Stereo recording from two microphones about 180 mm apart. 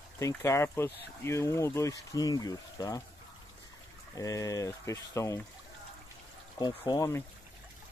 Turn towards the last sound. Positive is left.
turn(degrees=20)  # may be behind; listen again after turning